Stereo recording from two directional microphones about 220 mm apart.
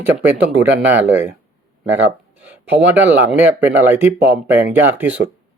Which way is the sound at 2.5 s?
10° right (ahead or behind).